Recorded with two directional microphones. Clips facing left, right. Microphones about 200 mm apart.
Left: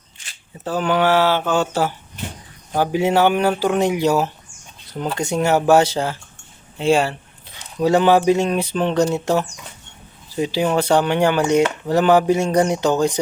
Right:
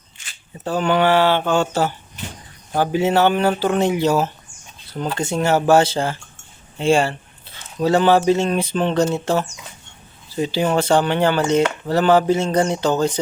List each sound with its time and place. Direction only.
0.6 s speech: 5° left (ahead or behind)
2.7 s speech: 10° left (ahead or behind)